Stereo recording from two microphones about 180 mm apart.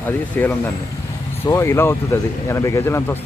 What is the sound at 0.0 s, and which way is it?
Speech, 10° left (ahead or behind).